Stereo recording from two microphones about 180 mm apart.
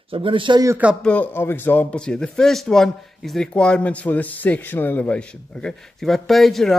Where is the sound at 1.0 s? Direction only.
10° left (ahead or behind).